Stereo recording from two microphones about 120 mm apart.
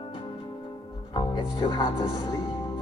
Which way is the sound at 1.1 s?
40° left (ahead or behind).